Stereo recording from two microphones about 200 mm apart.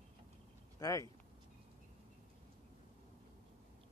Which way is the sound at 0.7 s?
15° left (ahead or behind).